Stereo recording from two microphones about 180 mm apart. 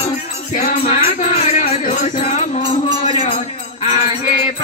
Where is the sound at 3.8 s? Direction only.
40° left (ahead or behind).